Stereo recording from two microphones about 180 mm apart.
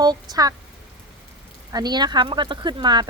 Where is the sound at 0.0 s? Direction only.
20° right (ahead or behind).